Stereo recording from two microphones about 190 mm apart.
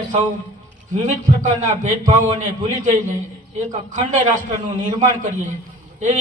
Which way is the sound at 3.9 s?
40° right (ahead or behind).